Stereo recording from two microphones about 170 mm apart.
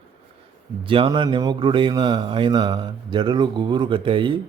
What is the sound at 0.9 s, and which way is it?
Speech, 30° right (ahead or behind).